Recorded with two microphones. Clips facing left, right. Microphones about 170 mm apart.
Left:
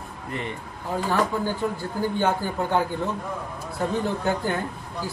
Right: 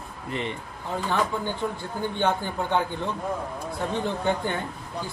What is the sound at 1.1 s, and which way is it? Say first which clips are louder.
Speech: left 2 dB; 10° left (ahead or behind).